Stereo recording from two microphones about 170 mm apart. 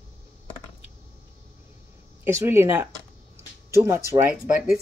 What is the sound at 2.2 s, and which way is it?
Speech, 15° right (ahead or behind).